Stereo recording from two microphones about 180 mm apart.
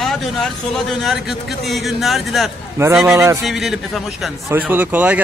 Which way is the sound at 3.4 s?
Centre (ahead or behind).